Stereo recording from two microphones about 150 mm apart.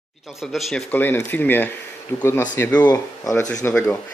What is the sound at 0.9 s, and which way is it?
Speech, 15° left (ahead or behind).